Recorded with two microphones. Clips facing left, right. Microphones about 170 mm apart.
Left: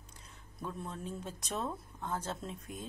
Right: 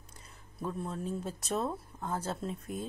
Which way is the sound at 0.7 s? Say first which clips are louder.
Right 5 dB; 5° right (ahead or behind).